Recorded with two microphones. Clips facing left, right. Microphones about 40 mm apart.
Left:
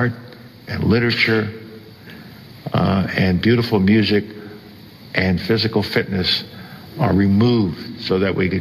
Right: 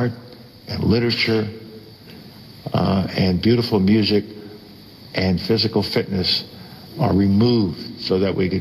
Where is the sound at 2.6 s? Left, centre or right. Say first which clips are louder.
Left 1 dB; left.